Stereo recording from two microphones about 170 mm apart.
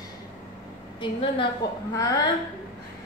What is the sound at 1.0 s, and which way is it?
Speech, 30° left (ahead or behind).